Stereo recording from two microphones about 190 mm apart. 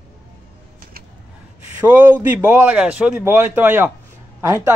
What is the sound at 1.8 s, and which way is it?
A man's voice, 10° right (ahead or behind).